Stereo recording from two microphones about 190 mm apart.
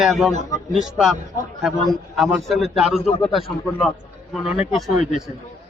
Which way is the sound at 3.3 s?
Centre (ahead or behind).